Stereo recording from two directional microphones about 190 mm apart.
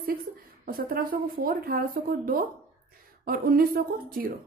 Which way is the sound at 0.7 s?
50° right (ahead or behind).